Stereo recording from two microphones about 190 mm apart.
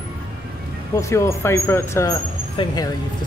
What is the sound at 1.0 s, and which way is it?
Speech, 15° left (ahead or behind).